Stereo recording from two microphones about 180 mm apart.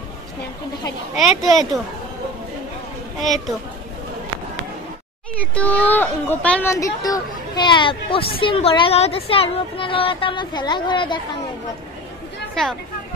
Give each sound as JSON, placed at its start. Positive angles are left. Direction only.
{"t": 1.1, "sound": "speech", "side_deg": 0}
{"t": 3.2, "sound": "speech", "side_deg": 0}
{"t": 5.5, "sound": "speech", "side_deg": 10}